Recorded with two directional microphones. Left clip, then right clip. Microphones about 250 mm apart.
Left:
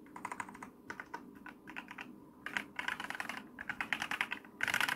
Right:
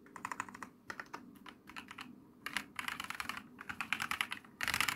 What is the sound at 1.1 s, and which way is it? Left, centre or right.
Typing, centre.